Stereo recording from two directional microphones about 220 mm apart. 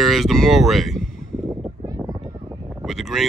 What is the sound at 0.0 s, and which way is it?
Speech, centre (ahead or behind).